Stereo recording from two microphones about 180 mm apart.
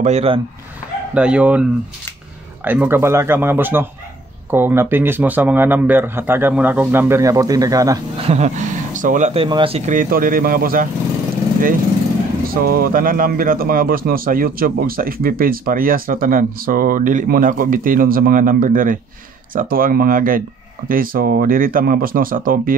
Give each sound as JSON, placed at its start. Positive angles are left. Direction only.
{"t": 0.0, "sound": "speech", "side_deg": -35}
{"t": 1.1, "sound": "speech", "side_deg": -5}
{"t": 8.3, "sound": "speech", "side_deg": -40}
{"t": 12.4, "sound": "speech", "side_deg": -55}